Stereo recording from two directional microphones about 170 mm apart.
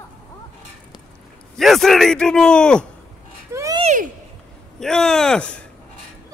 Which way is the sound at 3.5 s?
20° right (ahead or behind).